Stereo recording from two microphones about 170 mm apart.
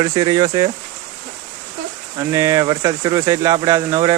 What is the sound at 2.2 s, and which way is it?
Speech, 20° right (ahead or behind).